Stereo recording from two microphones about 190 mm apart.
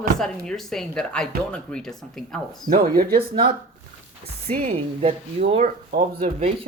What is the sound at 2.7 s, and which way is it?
Speech, 50° right (ahead or behind).